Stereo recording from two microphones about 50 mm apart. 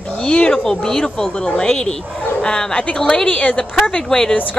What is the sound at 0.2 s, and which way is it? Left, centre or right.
A woman's voice, centre.